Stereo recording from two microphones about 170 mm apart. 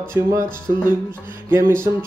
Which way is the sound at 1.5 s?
15° right (ahead or behind).